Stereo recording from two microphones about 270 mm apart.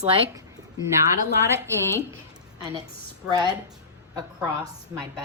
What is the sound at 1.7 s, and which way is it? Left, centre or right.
Speech, centre.